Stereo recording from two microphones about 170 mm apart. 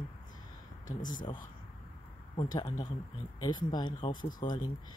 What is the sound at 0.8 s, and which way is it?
Speech, 50° left (ahead or behind).